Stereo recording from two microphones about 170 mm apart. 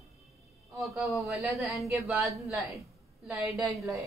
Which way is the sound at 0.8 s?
Centre (ahead or behind).